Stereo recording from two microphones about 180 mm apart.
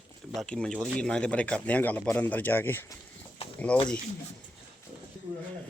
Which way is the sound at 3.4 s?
35° left (ahead or behind).